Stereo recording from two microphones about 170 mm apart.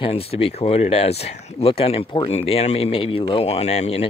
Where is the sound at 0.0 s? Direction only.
35° left (ahead or behind).